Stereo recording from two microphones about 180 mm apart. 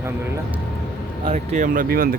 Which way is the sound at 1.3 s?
45° right (ahead or behind).